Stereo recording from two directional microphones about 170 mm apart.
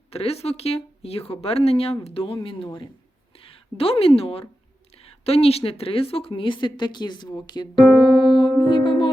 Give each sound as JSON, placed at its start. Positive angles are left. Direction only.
{"t": 0.1, "sound": "a woman's voice", "side_deg": 35}
{"t": 8.0, "sound": "music", "side_deg": 25}